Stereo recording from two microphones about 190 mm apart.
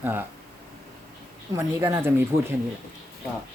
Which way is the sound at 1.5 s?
15° right (ahead or behind).